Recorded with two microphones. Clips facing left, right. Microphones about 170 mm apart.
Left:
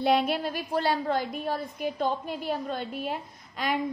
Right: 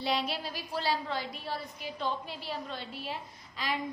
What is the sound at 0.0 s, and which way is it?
A woman's voice, 55° left (ahead or behind).